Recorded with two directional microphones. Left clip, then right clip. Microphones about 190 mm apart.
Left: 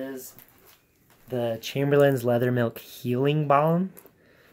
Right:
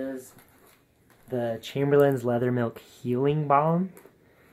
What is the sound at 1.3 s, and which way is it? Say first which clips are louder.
Speech: left 1 dB; 15° left (ahead or behind).